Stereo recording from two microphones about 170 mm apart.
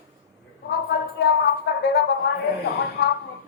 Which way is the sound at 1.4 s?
80° left.